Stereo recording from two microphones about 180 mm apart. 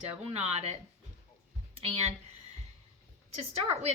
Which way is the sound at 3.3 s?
35° right (ahead or behind).